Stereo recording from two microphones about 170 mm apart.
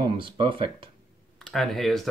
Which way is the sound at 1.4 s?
Centre (ahead or behind).